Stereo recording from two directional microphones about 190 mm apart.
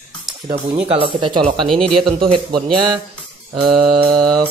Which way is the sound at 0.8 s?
30° right (ahead or behind).